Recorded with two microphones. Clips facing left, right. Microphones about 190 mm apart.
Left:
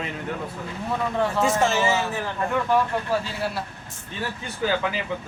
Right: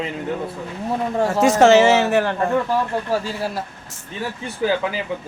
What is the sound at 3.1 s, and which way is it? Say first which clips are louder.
Speech: right 3 dB; 40° right (ahead or behind).